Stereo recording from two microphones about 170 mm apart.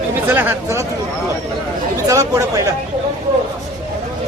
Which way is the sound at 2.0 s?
20° right (ahead or behind).